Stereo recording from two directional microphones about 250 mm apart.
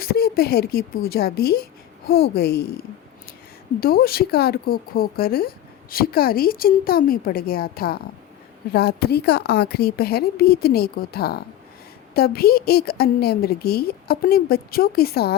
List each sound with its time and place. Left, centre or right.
0.0 s a woman's voice: left
3.8 s a woman's voice: left